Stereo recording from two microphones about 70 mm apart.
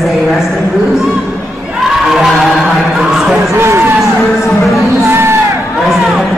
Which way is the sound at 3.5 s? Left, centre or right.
Right.